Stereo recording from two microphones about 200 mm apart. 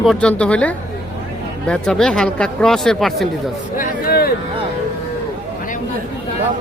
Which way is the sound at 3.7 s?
50° left (ahead or behind).